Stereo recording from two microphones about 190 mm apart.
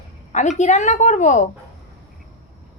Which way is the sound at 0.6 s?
40° left (ahead or behind).